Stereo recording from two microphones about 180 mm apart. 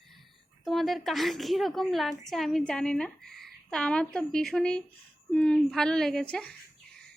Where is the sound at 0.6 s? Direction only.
Centre (ahead or behind).